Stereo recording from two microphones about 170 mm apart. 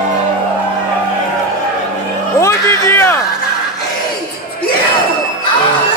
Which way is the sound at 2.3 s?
15° left (ahead or behind).